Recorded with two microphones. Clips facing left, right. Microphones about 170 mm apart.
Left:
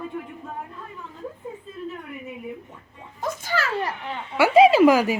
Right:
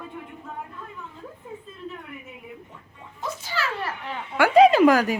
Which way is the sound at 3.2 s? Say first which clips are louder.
Left 4 dB; 50° left (ahead or behind).